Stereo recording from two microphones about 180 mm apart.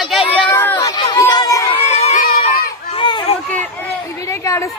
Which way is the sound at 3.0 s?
25° left (ahead or behind).